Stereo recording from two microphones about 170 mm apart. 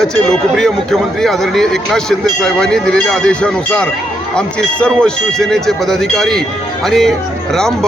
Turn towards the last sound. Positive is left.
turn(degrees=5)  # may be behind; listen again after turning